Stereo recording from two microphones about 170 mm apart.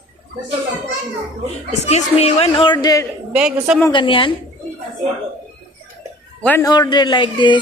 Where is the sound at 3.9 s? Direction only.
30° left (ahead or behind).